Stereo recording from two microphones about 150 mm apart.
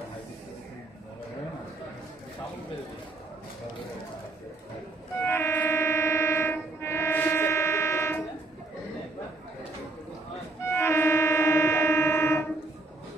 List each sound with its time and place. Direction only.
5.2 s music: 15° left (ahead or behind)
10.7 s music: 15° left (ahead or behind)